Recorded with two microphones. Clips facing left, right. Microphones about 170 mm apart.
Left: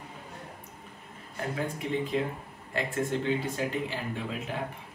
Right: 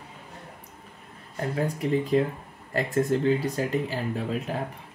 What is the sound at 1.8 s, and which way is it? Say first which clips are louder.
Speech: right 7 dB; 35° right (ahead or behind).